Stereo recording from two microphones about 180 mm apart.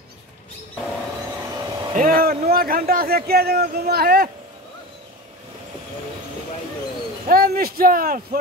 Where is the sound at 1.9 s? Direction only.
50° right (ahead or behind).